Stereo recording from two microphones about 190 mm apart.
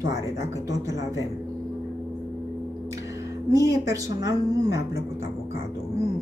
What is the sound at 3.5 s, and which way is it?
A woman's voice, 15° right (ahead or behind).